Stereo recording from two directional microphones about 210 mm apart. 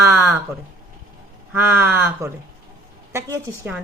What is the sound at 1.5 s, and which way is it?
Speech, 10° right (ahead or behind).